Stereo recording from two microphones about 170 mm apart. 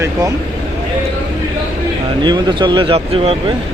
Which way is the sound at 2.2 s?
25° right (ahead or behind).